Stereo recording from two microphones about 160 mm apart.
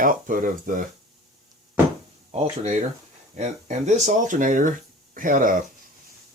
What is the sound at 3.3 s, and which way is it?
Speech, 45° right (ahead or behind).